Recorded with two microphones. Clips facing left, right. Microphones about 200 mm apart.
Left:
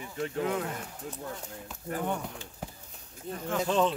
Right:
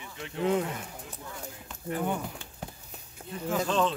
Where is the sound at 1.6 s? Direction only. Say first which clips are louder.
Right 2 dB; centre (ahead or behind).